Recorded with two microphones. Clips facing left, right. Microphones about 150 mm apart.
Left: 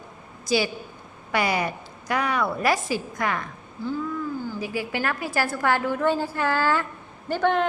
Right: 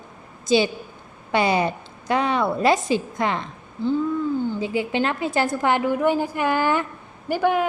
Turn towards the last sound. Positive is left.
turn(degrees=-10)  # may be behind; listen again after turning